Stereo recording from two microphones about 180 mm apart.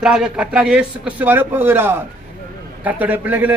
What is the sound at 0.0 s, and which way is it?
A man's voice, 5° right (ahead or behind).